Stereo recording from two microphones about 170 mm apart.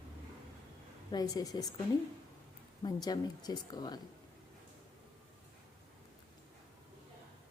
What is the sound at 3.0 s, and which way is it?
Speech, 25° left (ahead or behind).